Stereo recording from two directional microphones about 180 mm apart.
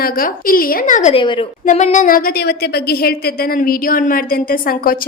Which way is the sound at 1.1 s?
30° left (ahead or behind).